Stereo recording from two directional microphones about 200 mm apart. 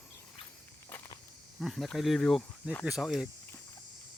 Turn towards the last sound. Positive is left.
turn(degrees=0)  # may be behind; listen again after turning